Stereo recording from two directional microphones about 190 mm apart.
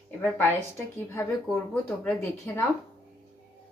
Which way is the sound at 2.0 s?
10° left (ahead or behind).